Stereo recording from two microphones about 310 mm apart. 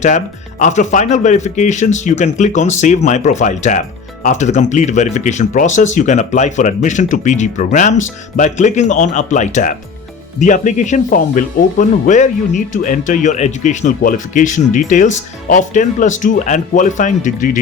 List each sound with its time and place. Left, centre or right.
0.6 s a man's voice: left